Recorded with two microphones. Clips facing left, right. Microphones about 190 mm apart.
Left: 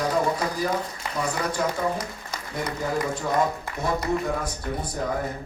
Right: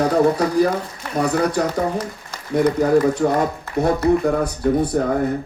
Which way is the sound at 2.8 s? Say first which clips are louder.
Right 9 dB; 65° right (ahead or behind).